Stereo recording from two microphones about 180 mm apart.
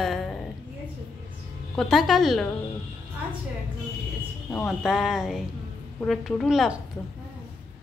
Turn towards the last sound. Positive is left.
turn(degrees=0)  # may be behind; listen again after turning